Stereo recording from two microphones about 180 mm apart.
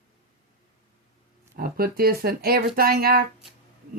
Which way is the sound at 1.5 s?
55° right (ahead or behind).